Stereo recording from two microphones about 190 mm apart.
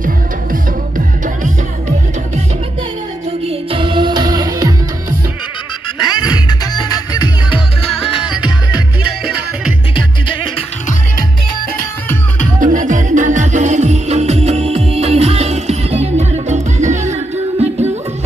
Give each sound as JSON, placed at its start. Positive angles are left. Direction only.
{"t": 0.0, "sound": "music", "side_deg": -45}
{"t": 3.4, "sound": "music", "side_deg": -25}
{"t": 6.1, "sound": "music", "side_deg": 20}
{"t": 12.5, "sound": "music", "side_deg": -45}